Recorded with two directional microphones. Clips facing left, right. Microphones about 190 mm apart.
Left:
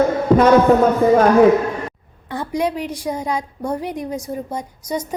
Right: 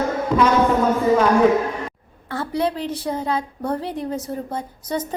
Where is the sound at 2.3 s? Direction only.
15° left (ahead or behind).